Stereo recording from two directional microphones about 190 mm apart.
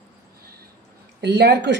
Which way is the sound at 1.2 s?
65° right (ahead or behind).